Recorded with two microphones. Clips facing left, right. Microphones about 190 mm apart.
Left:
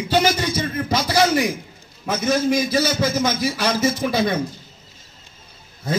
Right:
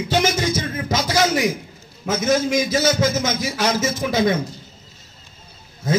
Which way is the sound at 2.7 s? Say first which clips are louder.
Right 1 dB; 60° left (ahead or behind).